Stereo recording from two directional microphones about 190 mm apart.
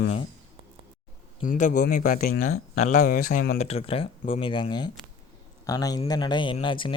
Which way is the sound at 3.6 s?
35° left (ahead or behind).